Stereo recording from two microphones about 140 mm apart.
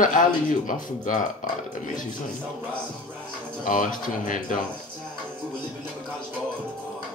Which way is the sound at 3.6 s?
70° left (ahead or behind).